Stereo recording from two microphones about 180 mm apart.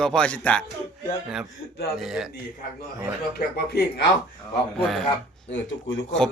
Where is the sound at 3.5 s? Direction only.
65° left (ahead or behind).